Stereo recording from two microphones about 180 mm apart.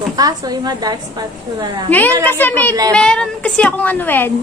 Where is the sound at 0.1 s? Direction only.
20° right (ahead or behind).